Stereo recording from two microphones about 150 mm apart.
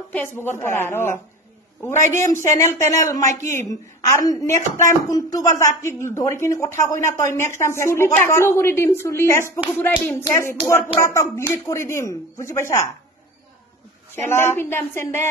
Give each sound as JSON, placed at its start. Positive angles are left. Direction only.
{"t": 0.1, "sound": "a woman's voice", "side_deg": 15}
{"t": 14.1, "sound": "a woman's voice", "side_deg": 15}